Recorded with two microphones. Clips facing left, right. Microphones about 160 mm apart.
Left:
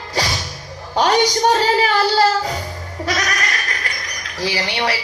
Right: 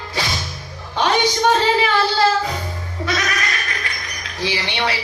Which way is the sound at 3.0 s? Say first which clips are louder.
Left 1 dB; 40° left (ahead or behind).